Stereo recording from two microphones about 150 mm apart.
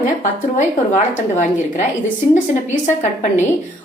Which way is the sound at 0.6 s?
50° left (ahead or behind).